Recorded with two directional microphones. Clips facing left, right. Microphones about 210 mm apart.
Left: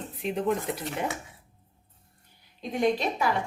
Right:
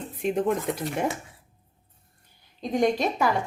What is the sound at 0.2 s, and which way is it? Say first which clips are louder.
Speech: right 5 dB; 45° right (ahead or behind).